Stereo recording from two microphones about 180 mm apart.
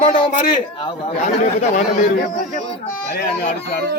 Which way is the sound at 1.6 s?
40° left (ahead or behind).